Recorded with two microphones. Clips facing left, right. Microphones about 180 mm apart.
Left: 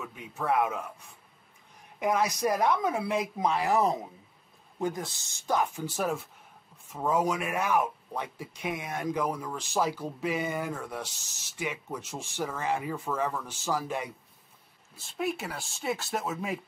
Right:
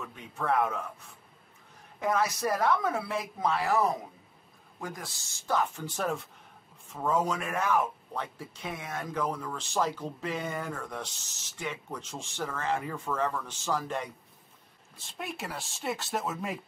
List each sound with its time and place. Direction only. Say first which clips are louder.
0.0 s speech: left 1 dB; 5° left (ahead or behind)
2.0 s speech: left 1 dB; 15° left (ahead or behind)